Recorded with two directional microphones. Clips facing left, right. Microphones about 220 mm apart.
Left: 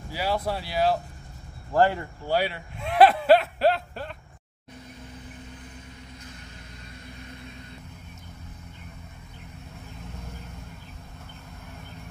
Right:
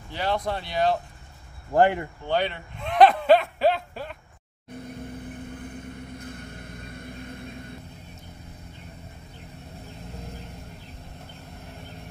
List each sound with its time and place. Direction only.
0.1 s speech: 5° left (ahead or behind)
1.7 s speech: 20° right (ahead or behind)
2.2 s a sound: 5° left (ahead or behind)
5.5 s vehicle: 55° right (ahead or behind)